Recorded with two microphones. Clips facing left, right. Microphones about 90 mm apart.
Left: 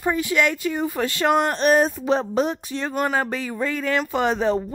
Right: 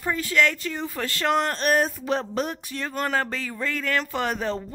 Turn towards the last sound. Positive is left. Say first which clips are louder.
# left 6 dB
turn(degrees=20)  # may be behind; listen again after turning